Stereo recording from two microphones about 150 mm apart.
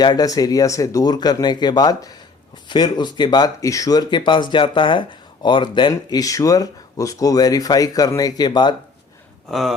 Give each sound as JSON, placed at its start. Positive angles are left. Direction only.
{"t": 0.0, "sound": "speech", "side_deg": 25}
{"t": 9.5, "sound": "speech", "side_deg": 0}